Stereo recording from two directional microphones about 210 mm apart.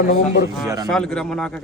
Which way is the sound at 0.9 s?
5° left (ahead or behind).